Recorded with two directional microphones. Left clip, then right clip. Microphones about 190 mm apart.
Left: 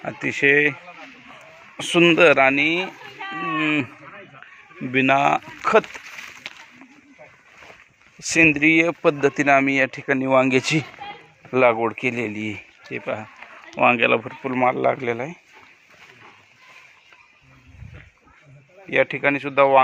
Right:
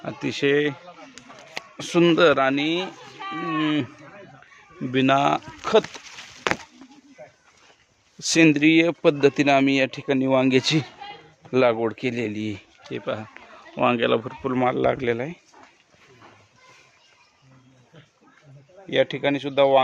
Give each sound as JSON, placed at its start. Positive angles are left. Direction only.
{"t": 0.3, "sound": "speech", "side_deg": -20}
{"t": 1.8, "sound": "speech", "side_deg": -10}
{"t": 2.3, "sound": "speech", "side_deg": 0}
{"t": 3.2, "sound": "speech", "side_deg": -25}
{"t": 4.9, "sound": "speech", "side_deg": -25}
{"t": 5.6, "sound": "speech", "side_deg": -10}
{"t": 8.2, "sound": "speech", "side_deg": -40}
{"t": 18.9, "sound": "speech", "side_deg": -10}